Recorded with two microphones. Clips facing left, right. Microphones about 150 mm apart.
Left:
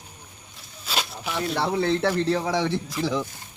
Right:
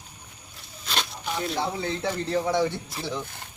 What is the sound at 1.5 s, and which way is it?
Speech, 70° left (ahead or behind).